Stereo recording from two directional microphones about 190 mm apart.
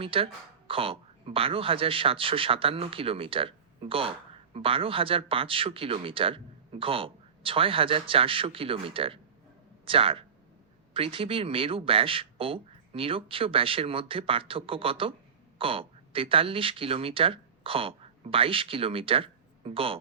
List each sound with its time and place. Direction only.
0.0 s speech: 30° right (ahead or behind)